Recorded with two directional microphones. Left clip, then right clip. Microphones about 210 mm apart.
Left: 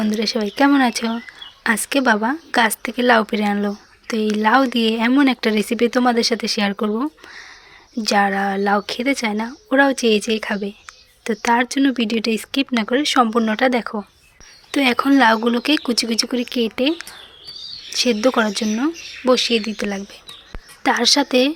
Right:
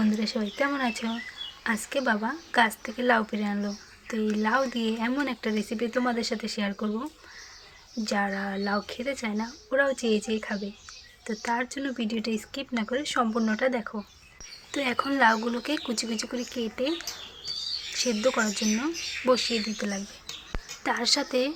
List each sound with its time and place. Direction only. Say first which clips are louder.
0.0 s speech: left 8 dB; 40° left (ahead or behind)